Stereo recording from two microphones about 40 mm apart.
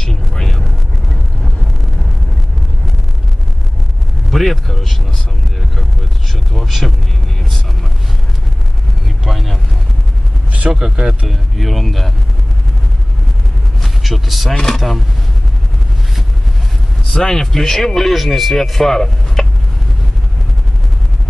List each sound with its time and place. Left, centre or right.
0.0 s a sound: centre
4.3 s speech: centre
6.3 s a sound: centre
9.2 s vehicle: centre
10.7 s speech: centre
11.5 s speech: centre
13.7 s a sound: centre
14.5 s speech: centre
17.1 s speech: centre